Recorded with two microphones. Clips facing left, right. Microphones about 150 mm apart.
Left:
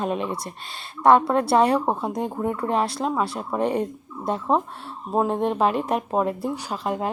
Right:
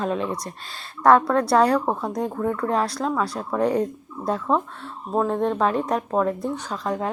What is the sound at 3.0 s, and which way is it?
Speech, 15° left (ahead or behind).